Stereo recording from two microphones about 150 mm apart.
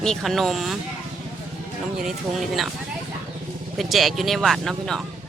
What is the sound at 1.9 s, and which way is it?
Speech, centre (ahead or behind).